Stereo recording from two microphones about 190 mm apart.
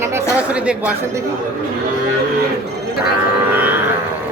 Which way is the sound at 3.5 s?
10° right (ahead or behind).